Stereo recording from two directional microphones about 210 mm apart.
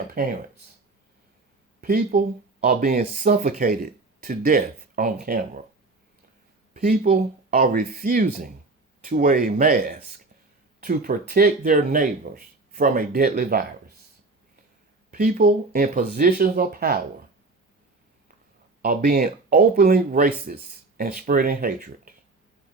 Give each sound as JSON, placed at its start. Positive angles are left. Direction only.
{"t": 0.2, "sound": "speech", "side_deg": -45}
{"t": 1.8, "sound": "speech", "side_deg": -45}
{"t": 6.8, "sound": "speech", "side_deg": -40}
{"t": 15.1, "sound": "speech", "side_deg": -45}
{"t": 18.8, "sound": "speech", "side_deg": -45}